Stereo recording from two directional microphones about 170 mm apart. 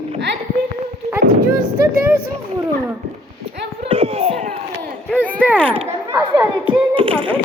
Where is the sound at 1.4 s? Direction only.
60° right (ahead or behind).